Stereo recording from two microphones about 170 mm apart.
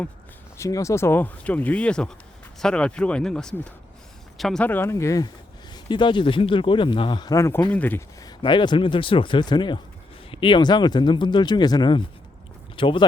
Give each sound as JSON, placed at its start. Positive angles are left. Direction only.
{"t": 0.5, "sound": "speech", "side_deg": 15}